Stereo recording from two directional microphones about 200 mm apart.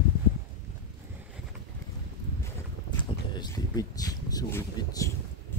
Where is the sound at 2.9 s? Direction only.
20° left (ahead or behind).